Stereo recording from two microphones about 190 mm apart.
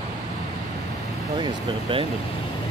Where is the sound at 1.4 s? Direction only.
25° right (ahead or behind).